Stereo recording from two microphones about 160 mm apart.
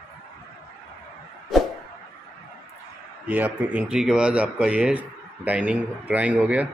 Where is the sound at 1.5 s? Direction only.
Centre (ahead or behind).